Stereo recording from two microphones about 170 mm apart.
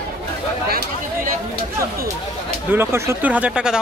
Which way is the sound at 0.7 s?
65° right (ahead or behind).